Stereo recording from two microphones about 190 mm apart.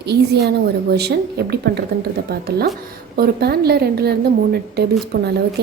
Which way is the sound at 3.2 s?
55° right (ahead or behind).